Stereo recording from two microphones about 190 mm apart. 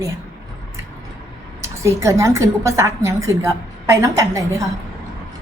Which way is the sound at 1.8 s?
15° right (ahead or behind).